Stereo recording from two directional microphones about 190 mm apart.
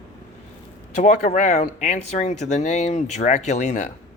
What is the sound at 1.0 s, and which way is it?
Speech, 40° left (ahead or behind).